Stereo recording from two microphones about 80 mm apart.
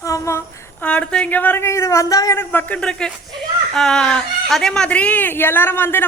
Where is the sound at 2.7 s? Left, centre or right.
Centre.